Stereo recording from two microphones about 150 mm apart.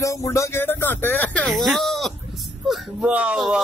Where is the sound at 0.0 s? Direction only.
20° left (ahead or behind); by 3.1 s centre (ahead or behind).